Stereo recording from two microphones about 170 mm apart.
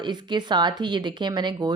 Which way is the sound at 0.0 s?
25° right (ahead or behind).